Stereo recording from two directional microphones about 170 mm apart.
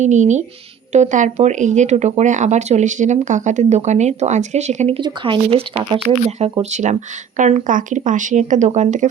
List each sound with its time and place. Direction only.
0.0 s speech: 45° right (ahead or behind)
4.9 s speech: 30° right (ahead or behind); by 9.0 s 45° right (ahead or behind)